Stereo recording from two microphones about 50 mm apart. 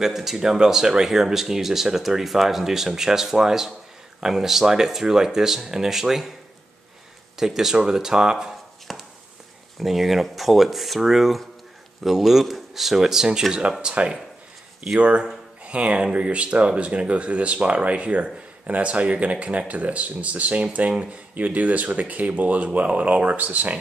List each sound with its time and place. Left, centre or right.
0.0 s speech: centre
7.3 s speech: centre
8.9 s a sound: centre
9.8 s speech: centre; by 23.8 s right